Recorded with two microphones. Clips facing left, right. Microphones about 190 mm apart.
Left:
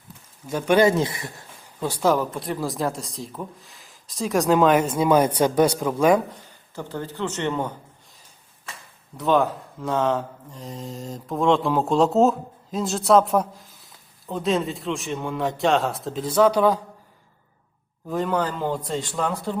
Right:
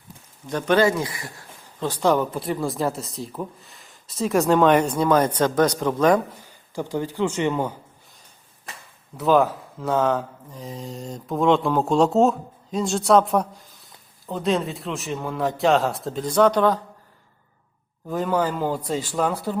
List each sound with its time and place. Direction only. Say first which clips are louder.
0.4 s speech: left 1 dB; 10° left (ahead or behind)
1.8 s speech: right 1 dB; 5° left (ahead or behind)
6.7 s speech: right 5 dB; 15° right (ahead or behind)
9.1 s speech: right 2 dB; centre (ahead or behind)
18.1 s speech: right 1 dB; centre (ahead or behind)